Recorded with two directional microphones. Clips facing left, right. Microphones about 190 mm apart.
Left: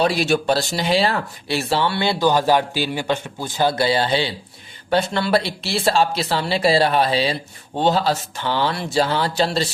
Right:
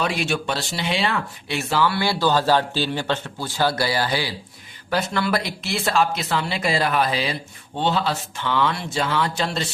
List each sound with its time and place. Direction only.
0.0 s speech: 35° left (ahead or behind)